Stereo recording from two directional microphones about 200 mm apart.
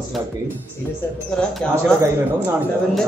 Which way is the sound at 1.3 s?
5° left (ahead or behind).